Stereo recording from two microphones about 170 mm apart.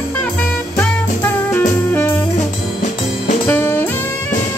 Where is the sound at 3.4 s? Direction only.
10° left (ahead or behind).